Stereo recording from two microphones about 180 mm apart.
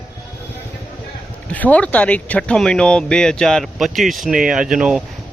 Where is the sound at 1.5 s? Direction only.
10° left (ahead or behind).